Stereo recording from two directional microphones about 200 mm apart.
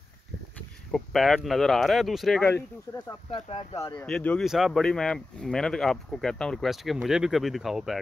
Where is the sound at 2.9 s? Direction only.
20° left (ahead or behind).